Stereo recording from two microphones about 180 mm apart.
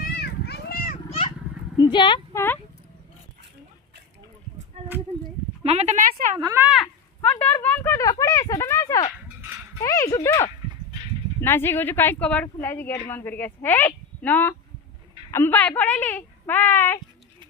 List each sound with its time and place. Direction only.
0.0 s children playing: 65° left (ahead or behind)
1.8 s speech: 25° left (ahead or behind)
5.6 s speech: 35° right (ahead or behind)
6.4 s speech: 15° right (ahead or behind)
7.2 s speech: 10° left (ahead or behind)